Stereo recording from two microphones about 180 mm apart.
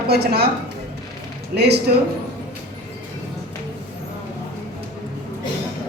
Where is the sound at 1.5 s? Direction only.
65° right (ahead or behind).